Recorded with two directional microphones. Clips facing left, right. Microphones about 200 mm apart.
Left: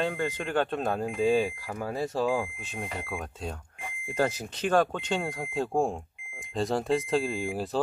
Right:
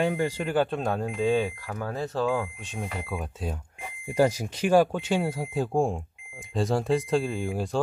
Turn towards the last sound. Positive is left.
turn(degrees=0)  # may be behind; listen again after turning